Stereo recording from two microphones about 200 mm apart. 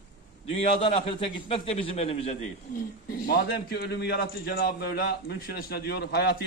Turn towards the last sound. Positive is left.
turn(degrees=55)  # may be behind; listen again after turning